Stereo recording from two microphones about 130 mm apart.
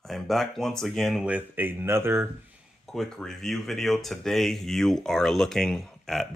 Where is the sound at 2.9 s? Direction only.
Centre (ahead or behind).